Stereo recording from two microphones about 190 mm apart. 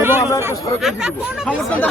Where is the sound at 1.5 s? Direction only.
10° left (ahead or behind).